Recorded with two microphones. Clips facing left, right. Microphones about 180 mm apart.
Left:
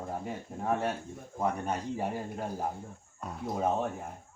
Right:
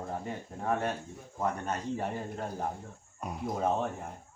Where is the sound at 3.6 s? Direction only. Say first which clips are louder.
Left 1 dB; 5° left (ahead or behind).